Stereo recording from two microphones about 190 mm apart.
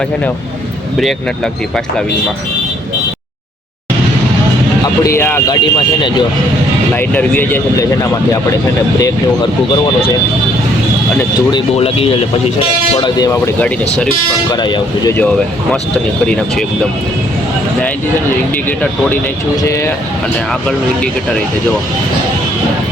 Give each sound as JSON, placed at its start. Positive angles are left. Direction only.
{"t": 5.0, "sound": "speech", "side_deg": 10}
{"t": 5.7, "sound": "speech", "side_deg": 25}
{"t": 6.9, "sound": "speech", "side_deg": 10}
{"t": 11.2, "sound": "speech", "side_deg": 20}
{"t": 14.5, "sound": "speech", "side_deg": 20}
{"t": 16.2, "sound": "speech", "side_deg": 5}
{"t": 18.5, "sound": "speech", "side_deg": 10}
{"t": 20.5, "sound": "speech", "side_deg": 0}